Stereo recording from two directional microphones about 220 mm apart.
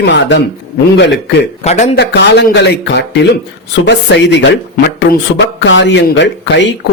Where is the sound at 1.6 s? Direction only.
30° left (ahead or behind).